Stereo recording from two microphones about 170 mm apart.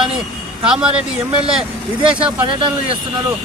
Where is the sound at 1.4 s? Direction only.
30° right (ahead or behind).